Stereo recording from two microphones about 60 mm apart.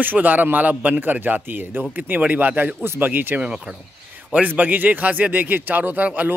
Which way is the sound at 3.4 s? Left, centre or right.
Centre.